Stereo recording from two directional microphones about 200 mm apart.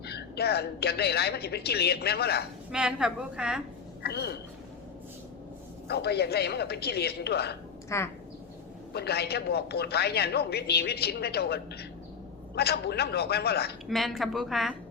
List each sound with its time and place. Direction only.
0.0 s speech: 55° left (ahead or behind)
2.7 s a woman's voice: 5° right (ahead or behind)
4.0 s speech: 55° left (ahead or behind)
5.9 s speech: 55° left (ahead or behind)
7.9 s speech: 15° left (ahead or behind)
8.9 s speech: 55° left (ahead or behind)
13.8 s a woman's voice: centre (ahead or behind)